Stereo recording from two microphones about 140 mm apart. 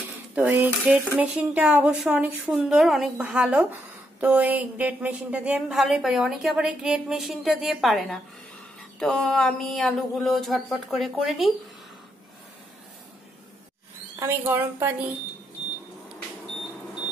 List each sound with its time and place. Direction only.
0.3 s dishes: 10° right (ahead or behind)
0.9 s speech: 10° right (ahead or behind)
14.2 s speech: 15° right (ahead or behind)